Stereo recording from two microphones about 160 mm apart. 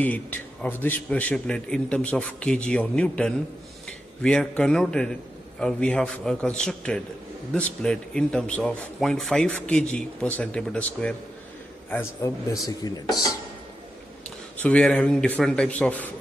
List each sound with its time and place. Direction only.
0.0 s a man's voice: 10° left (ahead or behind)
14.6 s a man's voice: 5° left (ahead or behind)